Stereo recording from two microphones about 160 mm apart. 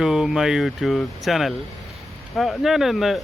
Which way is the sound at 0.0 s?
5° right (ahead or behind).